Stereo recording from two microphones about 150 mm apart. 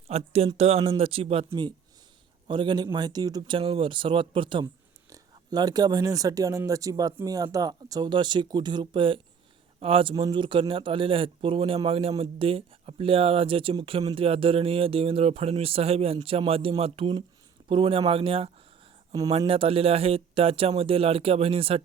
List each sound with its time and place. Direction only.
0.1 s speech: 40° right (ahead or behind)
2.5 s speech: 30° right (ahead or behind)